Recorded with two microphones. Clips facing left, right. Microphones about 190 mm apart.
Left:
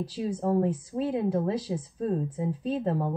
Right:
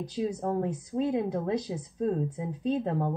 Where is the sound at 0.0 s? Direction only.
10° left (ahead or behind).